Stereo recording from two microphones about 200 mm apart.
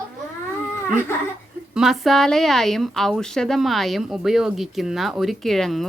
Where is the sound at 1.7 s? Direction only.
Centre (ahead or behind).